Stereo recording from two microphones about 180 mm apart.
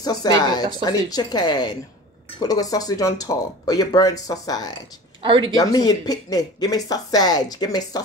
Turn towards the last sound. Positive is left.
turn(degrees=20)  # may be behind; listen again after turning